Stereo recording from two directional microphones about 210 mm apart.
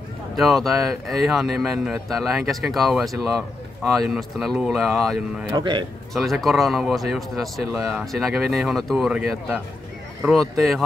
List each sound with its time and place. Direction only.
0.4 s speech: centre (ahead or behind)
5.5 s speech: 20° right (ahead or behind)
6.1 s speech: centre (ahead or behind)